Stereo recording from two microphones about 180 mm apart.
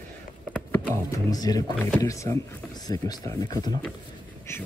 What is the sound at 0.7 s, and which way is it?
Speech, 20° left (ahead or behind).